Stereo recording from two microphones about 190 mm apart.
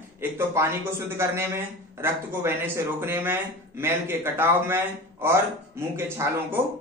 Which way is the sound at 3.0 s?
10° right (ahead or behind).